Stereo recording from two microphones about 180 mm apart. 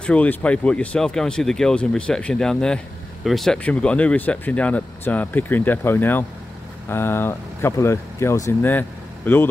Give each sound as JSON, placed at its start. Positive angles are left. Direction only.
{"t": 0.0, "sound": "speech", "side_deg": 5}